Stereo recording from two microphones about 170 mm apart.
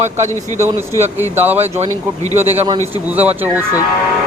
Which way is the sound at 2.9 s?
10° right (ahead or behind).